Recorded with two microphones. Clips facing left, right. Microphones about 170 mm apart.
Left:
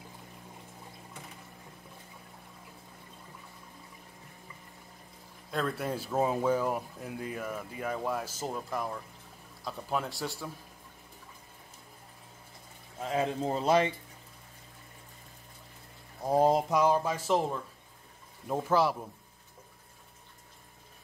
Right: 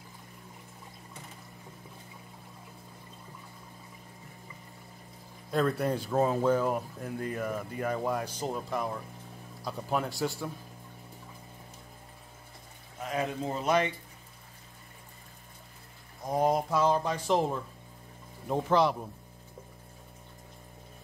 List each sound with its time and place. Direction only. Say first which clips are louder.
5.5 s speech: right 5 dB; centre (ahead or behind)
13.0 s speech: left 2 dB; 25° left (ahead or behind)
16.3 s speech: left 2 dB; 30° left (ahead or behind); by 18.9 s 5° left (ahead or behind)